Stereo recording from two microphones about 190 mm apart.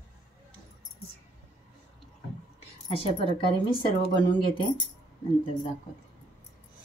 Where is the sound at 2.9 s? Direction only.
30° left (ahead or behind).